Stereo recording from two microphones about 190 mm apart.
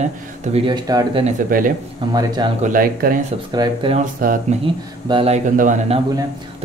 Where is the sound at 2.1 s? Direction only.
20° right (ahead or behind).